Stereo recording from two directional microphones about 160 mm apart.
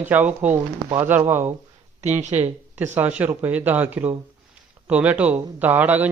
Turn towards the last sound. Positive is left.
turn(degrees=-10)  # may be behind; listen again after turning